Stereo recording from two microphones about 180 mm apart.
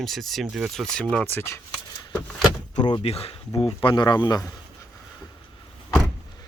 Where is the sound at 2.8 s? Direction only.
30° left (ahead or behind).